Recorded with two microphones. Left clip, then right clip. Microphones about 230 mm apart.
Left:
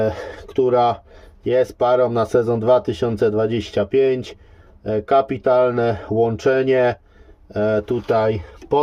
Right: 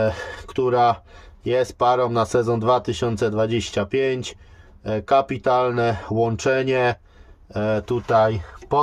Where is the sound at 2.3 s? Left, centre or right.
Right.